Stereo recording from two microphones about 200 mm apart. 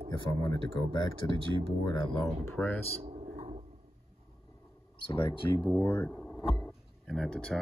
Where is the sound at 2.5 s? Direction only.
10° left (ahead or behind).